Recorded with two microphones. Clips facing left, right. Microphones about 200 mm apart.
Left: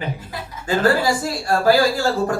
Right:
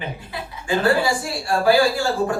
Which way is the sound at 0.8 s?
40° left (ahead or behind).